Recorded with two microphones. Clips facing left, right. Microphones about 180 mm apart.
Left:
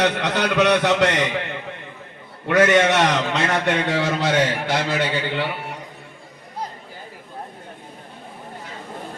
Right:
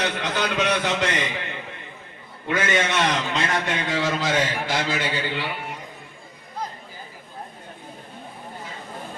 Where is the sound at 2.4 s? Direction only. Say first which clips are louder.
Left 8 dB; 70° left (ahead or behind).